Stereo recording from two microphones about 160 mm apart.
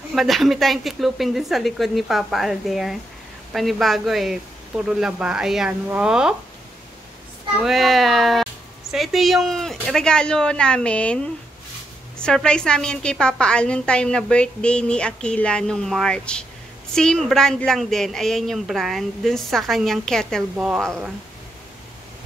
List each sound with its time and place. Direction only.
0.1 s a woman's voice: centre (ahead or behind)
7.6 s a woman's voice: centre (ahead or behind)
12.2 s a woman's voice: 5° left (ahead or behind)